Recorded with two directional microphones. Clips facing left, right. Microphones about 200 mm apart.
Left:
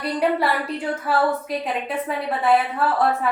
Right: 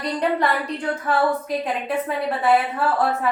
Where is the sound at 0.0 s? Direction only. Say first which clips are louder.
Left 1 dB; 5° left (ahead or behind).